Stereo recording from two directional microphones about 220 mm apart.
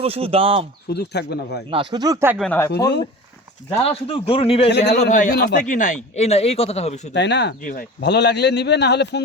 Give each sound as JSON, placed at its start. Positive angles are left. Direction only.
{"t": 0.0, "sound": "speech", "side_deg": -25}
{"t": 0.9, "sound": "speech", "side_deg": 45}
{"t": 1.7, "sound": "speech", "side_deg": -20}
{"t": 2.4, "sound": "speech", "side_deg": 10}
{"t": 2.7, "sound": "speech", "side_deg": 50}
{"t": 3.8, "sound": "a man's voice", "side_deg": 25}
{"t": 5.0, "sound": "speech", "side_deg": 40}
{"t": 7.1, "sound": "speech", "side_deg": 50}